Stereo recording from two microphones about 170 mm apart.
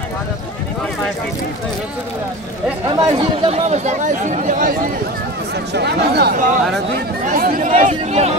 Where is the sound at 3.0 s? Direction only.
40° right (ahead or behind).